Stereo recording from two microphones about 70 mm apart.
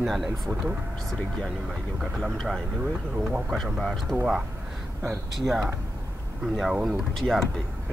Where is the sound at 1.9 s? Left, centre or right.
Centre.